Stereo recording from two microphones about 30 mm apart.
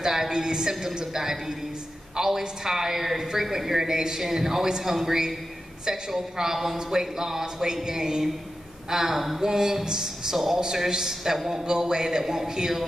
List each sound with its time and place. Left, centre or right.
0.0 s a woman's voice: centre
9.4 s a man's voice: centre
10.3 s a woman's voice: centre
10.6 s a man's voice: right